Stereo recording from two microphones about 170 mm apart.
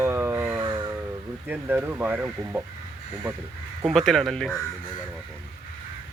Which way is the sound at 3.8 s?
Centre (ahead or behind).